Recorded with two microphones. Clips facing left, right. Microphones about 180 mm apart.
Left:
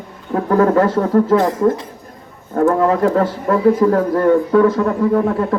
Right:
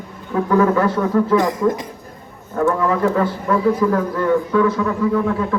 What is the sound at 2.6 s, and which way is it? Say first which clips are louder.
A man's voice: left 4 dB; 45° left (ahead or behind).